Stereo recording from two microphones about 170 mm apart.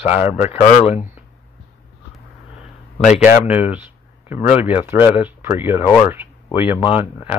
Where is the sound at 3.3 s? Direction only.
10° right (ahead or behind).